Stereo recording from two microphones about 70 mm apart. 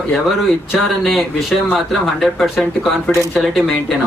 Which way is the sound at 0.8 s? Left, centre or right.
Centre.